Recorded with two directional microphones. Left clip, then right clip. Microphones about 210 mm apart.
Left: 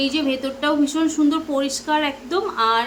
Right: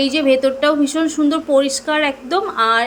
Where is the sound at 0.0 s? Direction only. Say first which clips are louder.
Right 8 dB; 20° right (ahead or behind).